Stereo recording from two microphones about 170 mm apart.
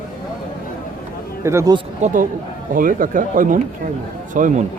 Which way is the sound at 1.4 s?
20° right (ahead or behind).